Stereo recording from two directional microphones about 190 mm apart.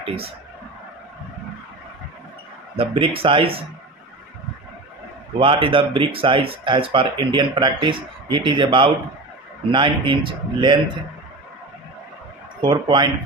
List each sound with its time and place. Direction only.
2.7 s speech: 30° right (ahead or behind)
5.4 s speech: 25° right (ahead or behind)
12.6 s speech: 25° right (ahead or behind)